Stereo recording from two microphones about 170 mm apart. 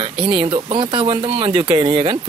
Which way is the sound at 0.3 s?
30° right (ahead or behind).